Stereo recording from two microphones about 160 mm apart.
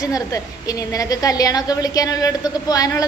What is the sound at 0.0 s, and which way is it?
A woman's voice, 20° left (ahead or behind).